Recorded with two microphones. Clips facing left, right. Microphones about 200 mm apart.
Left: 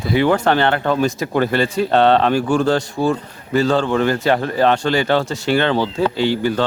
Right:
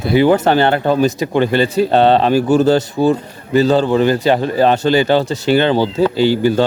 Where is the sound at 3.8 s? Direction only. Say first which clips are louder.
Right 4 dB; 35° right (ahead or behind).